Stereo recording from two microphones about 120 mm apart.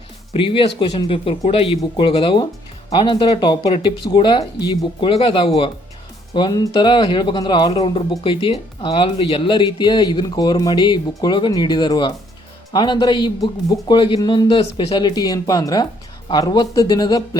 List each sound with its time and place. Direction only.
0.3 s speech: 45° left (ahead or behind)
14.6 s speech: 55° left (ahead or behind)
14.9 s speech: 35° left (ahead or behind)